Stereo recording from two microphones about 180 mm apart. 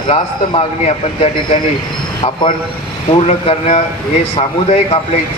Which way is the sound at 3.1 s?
35° left (ahead or behind).